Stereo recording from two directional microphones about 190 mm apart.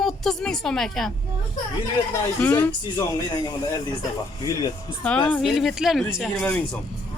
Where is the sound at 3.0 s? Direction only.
20° left (ahead or behind).